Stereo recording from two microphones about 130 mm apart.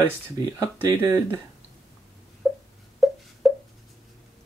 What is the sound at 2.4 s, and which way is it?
Wail, centre (ahead or behind).